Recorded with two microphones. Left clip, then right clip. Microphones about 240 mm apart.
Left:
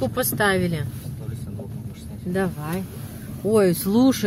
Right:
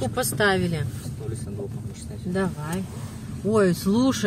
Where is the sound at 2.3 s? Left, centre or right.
Centre.